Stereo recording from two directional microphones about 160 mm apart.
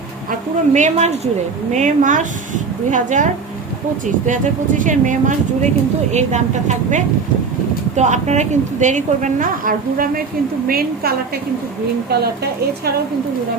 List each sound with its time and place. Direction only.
0.3 s a woman's voice: 50° right (ahead or behind); by 11.1 s 70° right (ahead or behind)